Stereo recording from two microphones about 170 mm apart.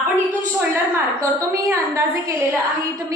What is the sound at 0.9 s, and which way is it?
A woman's voice, 20° right (ahead or behind).